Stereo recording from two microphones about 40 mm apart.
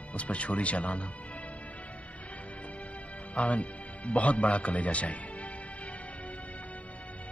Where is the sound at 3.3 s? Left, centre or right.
Left.